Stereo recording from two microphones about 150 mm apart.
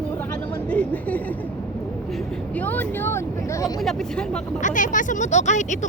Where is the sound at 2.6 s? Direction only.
10° left (ahead or behind).